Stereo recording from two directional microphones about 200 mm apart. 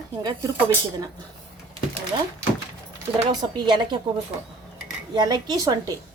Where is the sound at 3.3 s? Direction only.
20° right (ahead or behind).